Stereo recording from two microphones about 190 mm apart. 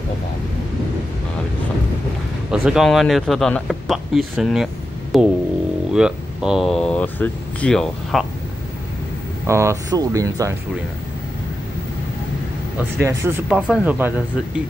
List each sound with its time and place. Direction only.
2.5 s speech: 5° right (ahead or behind)
9.5 s speech: 15° right (ahead or behind)
13.0 s speech: 15° right (ahead or behind)